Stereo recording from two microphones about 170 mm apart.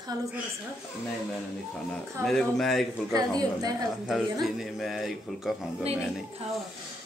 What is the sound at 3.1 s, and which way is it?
Speech, 20° right (ahead or behind).